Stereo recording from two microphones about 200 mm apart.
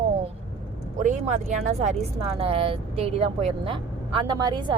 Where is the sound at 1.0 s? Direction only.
40° right (ahead or behind); by 4.7 s 20° right (ahead or behind).